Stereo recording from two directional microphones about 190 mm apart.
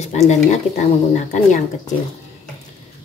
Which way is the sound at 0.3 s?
40° left (ahead or behind).